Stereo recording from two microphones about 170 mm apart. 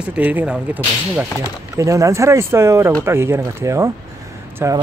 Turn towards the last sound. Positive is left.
turn(degrees=-15)  # may be behind; listen again after turning